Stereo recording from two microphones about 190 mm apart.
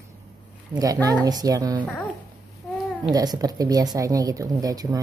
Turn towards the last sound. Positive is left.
turn(degrees=-20)  # may be behind; listen again after turning